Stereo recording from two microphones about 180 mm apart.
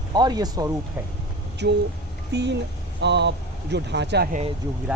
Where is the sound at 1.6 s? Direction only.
70° right (ahead or behind).